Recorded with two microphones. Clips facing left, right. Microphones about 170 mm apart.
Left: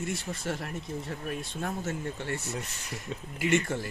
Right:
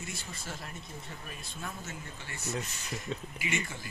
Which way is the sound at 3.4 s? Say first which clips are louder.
Left 14 dB; 60° left (ahead or behind).